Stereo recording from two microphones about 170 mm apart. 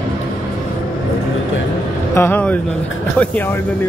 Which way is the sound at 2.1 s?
10° left (ahead or behind).